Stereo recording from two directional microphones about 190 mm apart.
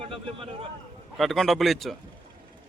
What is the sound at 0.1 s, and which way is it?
Speech, 30° right (ahead or behind).